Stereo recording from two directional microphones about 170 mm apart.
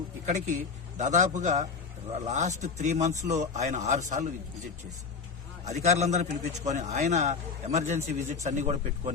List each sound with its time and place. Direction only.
0.9 s a man's voice: 45° right (ahead or behind)
5.6 s a man's voice: 40° right (ahead or behind)